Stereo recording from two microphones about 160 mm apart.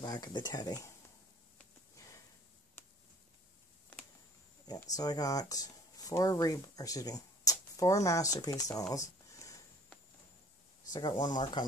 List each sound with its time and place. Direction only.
0.0 s speech: 25° left (ahead or behind)
4.9 s speech: 25° left (ahead or behind)
8.9 s a sound: 20° left (ahead or behind)
10.9 s speech: 25° left (ahead or behind)